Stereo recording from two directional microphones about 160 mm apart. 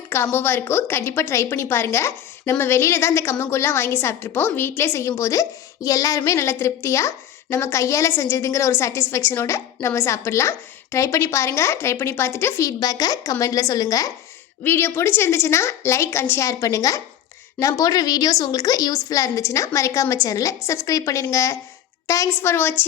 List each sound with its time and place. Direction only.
0.1 s a woman's voice: 15° left (ahead or behind)